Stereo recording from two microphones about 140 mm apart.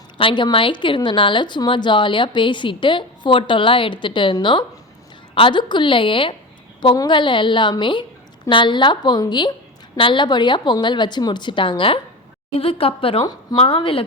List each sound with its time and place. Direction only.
0.2 s a woman's voice: 35° left (ahead or behind)